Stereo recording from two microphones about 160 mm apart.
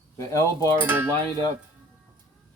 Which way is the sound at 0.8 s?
10° right (ahead or behind).